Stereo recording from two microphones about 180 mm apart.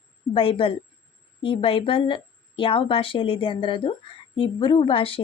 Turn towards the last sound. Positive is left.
turn(degrees=30)  # may be behind; listen again after turning